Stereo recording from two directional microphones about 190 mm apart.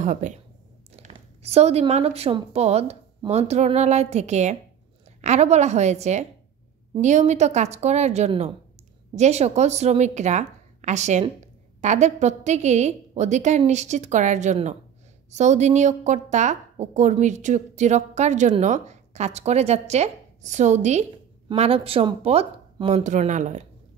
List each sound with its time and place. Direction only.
0.0 s a woman's voice: 40° right (ahead or behind)